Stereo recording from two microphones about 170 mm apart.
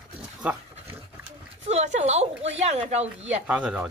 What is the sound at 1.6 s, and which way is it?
A woman's voice, 40° right (ahead or behind).